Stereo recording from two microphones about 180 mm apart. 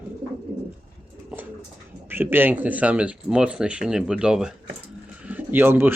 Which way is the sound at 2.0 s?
10° right (ahead or behind).